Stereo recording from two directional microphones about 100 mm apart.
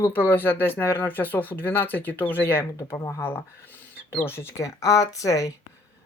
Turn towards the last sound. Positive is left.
turn(degrees=35)  # may be behind; listen again after turning